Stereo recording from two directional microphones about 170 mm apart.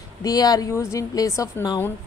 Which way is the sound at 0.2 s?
20° left (ahead or behind).